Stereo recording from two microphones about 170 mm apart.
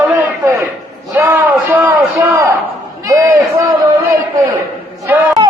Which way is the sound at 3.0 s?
20° right (ahead or behind).